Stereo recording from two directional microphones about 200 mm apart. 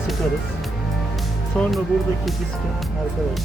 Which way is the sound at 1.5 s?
5° left (ahead or behind).